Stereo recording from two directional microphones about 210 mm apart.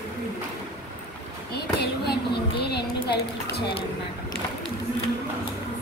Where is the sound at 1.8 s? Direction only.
50° left (ahead or behind).